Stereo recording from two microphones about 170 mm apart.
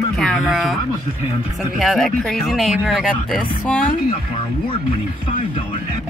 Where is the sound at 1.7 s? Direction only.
Centre (ahead or behind).